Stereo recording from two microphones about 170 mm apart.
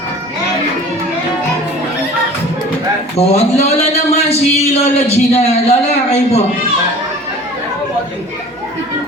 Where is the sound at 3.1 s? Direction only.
40° left (ahead or behind).